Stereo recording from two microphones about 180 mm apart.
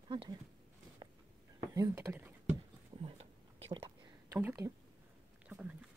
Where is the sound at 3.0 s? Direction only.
35° right (ahead or behind).